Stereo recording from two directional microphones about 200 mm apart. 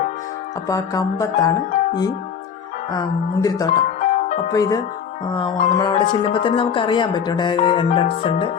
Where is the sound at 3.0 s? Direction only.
20° left (ahead or behind).